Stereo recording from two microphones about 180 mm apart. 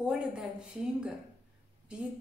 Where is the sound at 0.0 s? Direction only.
5° right (ahead or behind).